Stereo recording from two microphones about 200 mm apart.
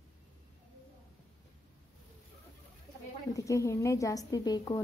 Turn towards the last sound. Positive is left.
turn(degrees=20)  # may be behind; listen again after turning